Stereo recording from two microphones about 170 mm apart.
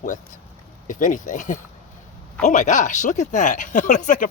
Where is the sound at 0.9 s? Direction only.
50° left (ahead or behind).